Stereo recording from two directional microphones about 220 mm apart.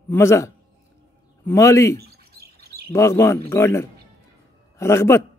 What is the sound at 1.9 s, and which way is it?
Bird, 45° right (ahead or behind).